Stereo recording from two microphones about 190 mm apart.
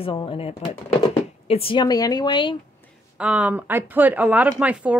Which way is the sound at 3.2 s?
5° right (ahead or behind).